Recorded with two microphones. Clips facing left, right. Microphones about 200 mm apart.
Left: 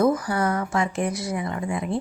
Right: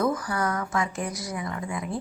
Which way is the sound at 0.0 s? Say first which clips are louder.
Left 5 dB; 25° left (ahead or behind).